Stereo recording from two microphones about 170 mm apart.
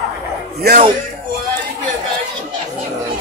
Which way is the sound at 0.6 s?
70° right (ahead or behind).